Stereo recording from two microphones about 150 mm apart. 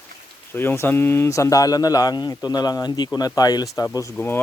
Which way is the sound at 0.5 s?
15° left (ahead or behind).